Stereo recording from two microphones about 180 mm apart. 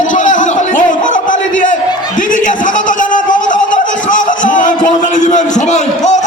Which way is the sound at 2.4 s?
45° left (ahead or behind).